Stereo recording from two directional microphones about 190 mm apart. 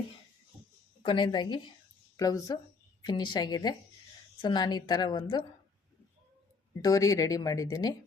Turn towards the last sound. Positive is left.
turn(degrees=20)  # may be behind; listen again after turning